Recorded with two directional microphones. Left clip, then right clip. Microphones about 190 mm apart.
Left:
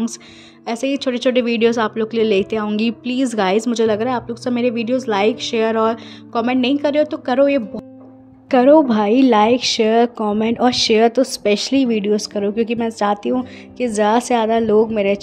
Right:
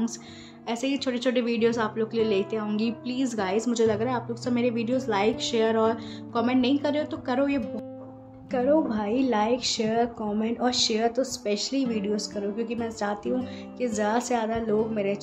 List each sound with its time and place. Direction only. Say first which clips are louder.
0.7 s a woman's voice: left 8 dB; 35° left (ahead or behind)
8.5 s a woman's voice: left 12 dB; 45° left (ahead or behind)